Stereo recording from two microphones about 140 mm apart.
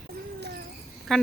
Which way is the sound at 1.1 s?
Centre (ahead or behind).